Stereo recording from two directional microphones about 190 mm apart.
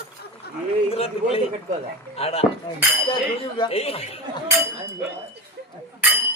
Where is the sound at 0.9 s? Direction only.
30° left (ahead or behind).